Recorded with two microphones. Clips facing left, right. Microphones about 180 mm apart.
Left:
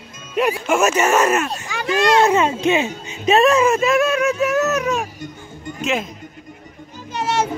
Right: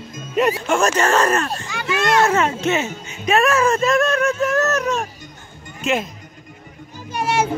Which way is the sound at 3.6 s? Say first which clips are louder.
Left 1 dB; 5° left (ahead or behind).